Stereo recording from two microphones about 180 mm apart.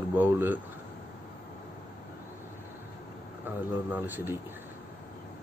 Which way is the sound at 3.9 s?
10° right (ahead or behind).